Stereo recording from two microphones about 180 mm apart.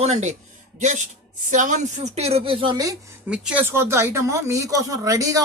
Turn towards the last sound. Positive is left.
turn(degrees=-20)  # may be behind; listen again after turning